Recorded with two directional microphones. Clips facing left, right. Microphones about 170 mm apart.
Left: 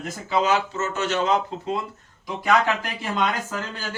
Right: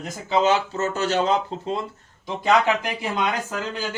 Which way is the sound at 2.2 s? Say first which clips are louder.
Right 2 dB; 20° right (ahead or behind).